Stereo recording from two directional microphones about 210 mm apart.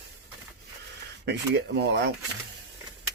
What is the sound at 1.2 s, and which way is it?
Speech, 55° right (ahead or behind).